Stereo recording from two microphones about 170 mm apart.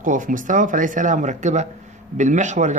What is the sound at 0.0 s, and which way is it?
Speech, 50° right (ahead or behind).